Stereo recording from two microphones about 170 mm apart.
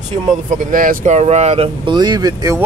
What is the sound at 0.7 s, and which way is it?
Speech, 55° right (ahead or behind).